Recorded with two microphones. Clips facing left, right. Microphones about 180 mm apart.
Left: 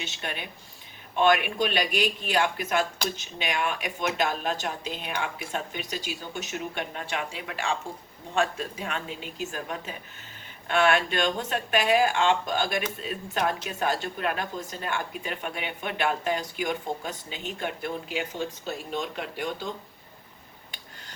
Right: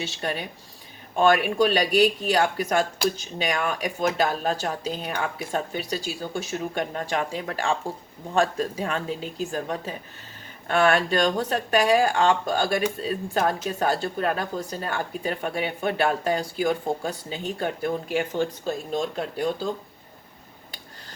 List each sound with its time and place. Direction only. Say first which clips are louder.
0.0 s speech: right 6 dB; 40° right (ahead or behind)
18.9 s speech: right 3 dB; 35° right (ahead or behind)